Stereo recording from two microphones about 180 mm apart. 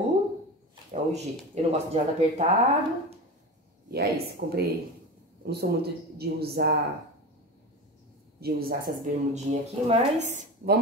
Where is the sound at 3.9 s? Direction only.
60° right (ahead or behind).